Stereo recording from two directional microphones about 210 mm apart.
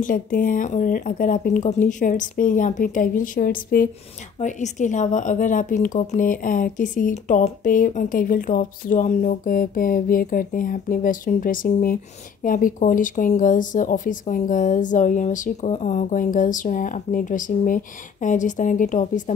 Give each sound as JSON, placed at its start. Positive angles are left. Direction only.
{"t": 0.0, "sound": "speech", "side_deg": 40}